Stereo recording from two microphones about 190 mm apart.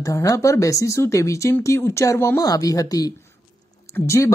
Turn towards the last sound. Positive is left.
turn(degrees=15)  # may be behind; listen again after turning